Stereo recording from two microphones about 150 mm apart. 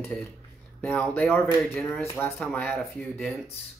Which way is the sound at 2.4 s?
5° left (ahead or behind).